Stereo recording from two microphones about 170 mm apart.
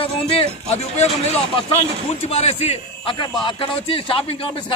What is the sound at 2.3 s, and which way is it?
A man's voice, 40° left (ahead or behind).